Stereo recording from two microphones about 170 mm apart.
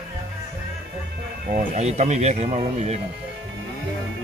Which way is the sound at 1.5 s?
50° right (ahead or behind).